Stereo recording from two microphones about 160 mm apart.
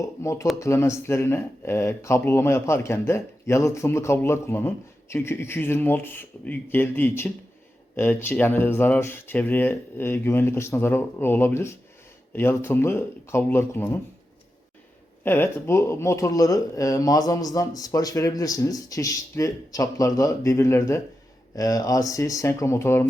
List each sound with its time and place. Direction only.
0.0 s speech: 20° left (ahead or behind)
15.2 s speech: 15° left (ahead or behind)